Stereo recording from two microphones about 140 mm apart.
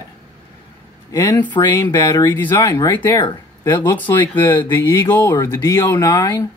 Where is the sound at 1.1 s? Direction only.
20° left (ahead or behind).